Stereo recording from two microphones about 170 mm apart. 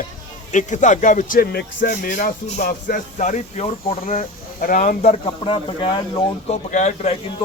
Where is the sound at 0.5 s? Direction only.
45° left (ahead or behind).